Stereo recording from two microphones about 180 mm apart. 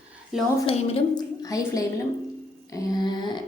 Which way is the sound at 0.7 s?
30° left (ahead or behind).